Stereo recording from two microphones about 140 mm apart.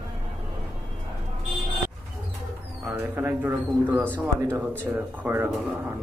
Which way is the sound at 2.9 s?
15° right (ahead or behind).